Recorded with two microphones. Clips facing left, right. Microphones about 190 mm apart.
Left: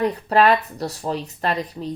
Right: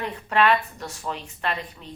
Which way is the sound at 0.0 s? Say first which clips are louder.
Left 5 dB; 40° left (ahead or behind).